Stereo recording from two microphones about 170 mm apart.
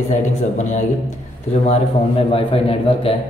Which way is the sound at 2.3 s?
35° left (ahead or behind).